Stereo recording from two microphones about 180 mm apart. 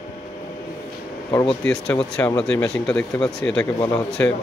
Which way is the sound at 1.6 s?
5° left (ahead or behind).